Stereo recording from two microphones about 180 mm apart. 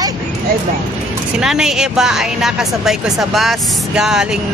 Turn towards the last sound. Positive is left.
turn(degrees=-5)  # may be behind; listen again after turning